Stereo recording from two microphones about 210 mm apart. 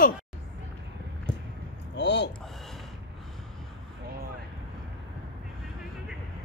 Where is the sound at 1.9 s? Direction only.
55° left (ahead or behind).